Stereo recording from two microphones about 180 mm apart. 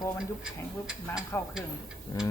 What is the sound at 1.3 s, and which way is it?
Speech, 15° left (ahead or behind).